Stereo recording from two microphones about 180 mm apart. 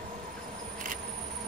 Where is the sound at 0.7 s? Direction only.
50° right (ahead or behind).